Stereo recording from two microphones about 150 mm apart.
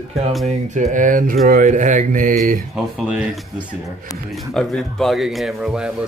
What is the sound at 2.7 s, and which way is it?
Speech, 5° right (ahead or behind).